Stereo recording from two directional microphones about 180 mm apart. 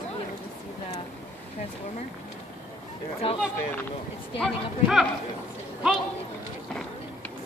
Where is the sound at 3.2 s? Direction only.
30° left (ahead or behind).